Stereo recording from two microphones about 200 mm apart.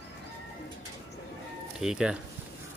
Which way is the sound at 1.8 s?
5° right (ahead or behind).